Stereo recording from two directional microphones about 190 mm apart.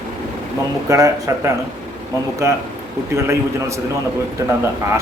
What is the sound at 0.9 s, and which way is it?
Speech, 15° right (ahead or behind).